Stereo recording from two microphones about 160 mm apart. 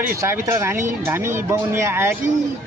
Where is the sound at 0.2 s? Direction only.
15° right (ahead or behind).